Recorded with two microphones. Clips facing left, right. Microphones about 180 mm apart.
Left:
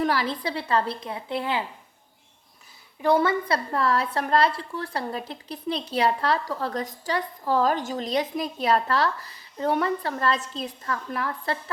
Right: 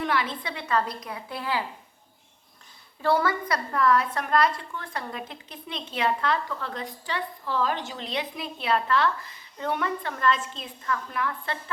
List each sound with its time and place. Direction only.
0.0 s a woman's voice: 35° left (ahead or behind)
3.0 s a woman's voice: 20° left (ahead or behind); by 11.5 s 35° left (ahead or behind)